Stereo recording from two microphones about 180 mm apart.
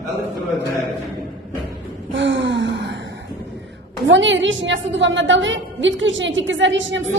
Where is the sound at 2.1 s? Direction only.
90° right.